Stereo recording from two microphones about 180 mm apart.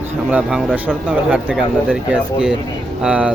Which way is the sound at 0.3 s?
5° right (ahead or behind).